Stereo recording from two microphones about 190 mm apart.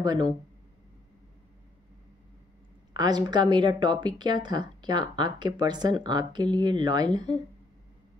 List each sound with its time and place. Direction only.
0.0 s speech: 20° right (ahead or behind)
2.9 s speech: 20° right (ahead or behind)